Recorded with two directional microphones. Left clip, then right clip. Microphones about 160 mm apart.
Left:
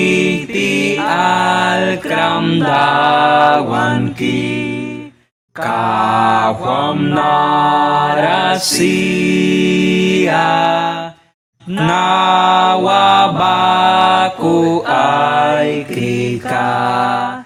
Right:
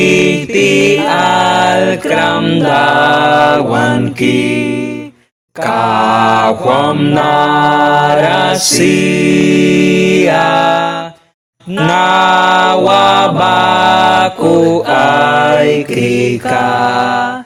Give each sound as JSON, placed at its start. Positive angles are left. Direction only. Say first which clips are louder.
{"t": 0.0, "sound": "music", "louder": "right 4 dB", "side_deg": -40}
{"t": 5.6, "sound": "mantra", "louder": "right 4 dB", "side_deg": -40}
{"t": 11.8, "sound": "chant", "louder": "right 4 dB", "side_deg": -35}